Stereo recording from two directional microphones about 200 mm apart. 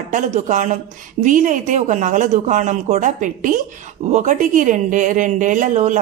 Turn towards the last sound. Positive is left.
turn(degrees=-40)  # may be behind; listen again after turning